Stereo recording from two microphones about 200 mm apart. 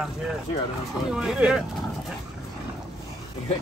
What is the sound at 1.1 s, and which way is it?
Speech, 5° right (ahead or behind).